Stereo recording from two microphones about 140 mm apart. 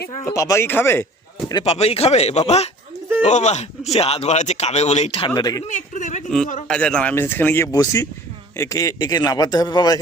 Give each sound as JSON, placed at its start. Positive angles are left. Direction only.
{"t": 0.3, "sound": "a man's voice", "side_deg": 20}
{"t": 1.6, "sound": "speech", "side_deg": 45}
{"t": 5.3, "sound": "a man's voice", "side_deg": 30}
{"t": 5.6, "sound": "speech", "side_deg": 60}
{"t": 6.2, "sound": "a man's voice", "side_deg": 5}
{"t": 7.7, "sound": "a man's voice", "side_deg": 25}